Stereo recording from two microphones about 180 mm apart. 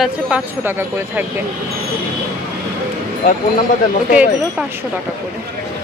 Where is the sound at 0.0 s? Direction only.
10° right (ahead or behind).